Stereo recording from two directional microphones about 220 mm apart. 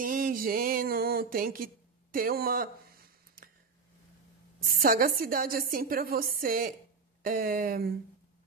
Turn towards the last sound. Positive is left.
turn(degrees=-40)  # may be behind; listen again after turning